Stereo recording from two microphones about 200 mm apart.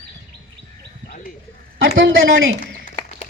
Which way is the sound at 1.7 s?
75° right (ahead or behind).